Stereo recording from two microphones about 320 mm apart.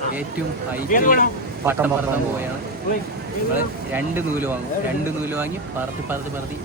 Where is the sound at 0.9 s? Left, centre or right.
Left.